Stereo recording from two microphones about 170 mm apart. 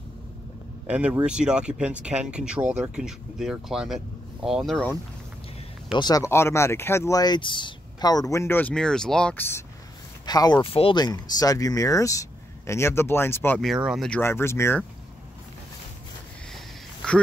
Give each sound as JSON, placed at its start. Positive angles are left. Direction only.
{"t": 0.8, "sound": "speech", "side_deg": -5}
{"t": 5.9, "sound": "speech", "side_deg": 25}
{"t": 13.6, "sound": "speech", "side_deg": 0}
{"t": 16.5, "sound": "a sound", "side_deg": 5}